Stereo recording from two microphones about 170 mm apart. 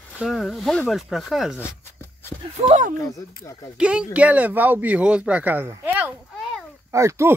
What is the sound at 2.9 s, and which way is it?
Speech, 20° left (ahead or behind).